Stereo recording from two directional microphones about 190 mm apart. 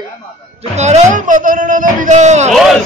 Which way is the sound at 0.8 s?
35° right (ahead or behind).